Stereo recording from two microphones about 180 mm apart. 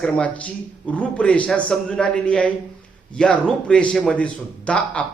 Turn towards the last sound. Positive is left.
turn(degrees=5)  # may be behind; listen again after turning